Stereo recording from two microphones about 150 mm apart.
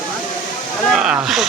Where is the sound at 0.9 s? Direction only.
5° right (ahead or behind).